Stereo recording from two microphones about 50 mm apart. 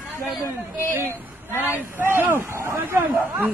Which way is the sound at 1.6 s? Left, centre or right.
Right.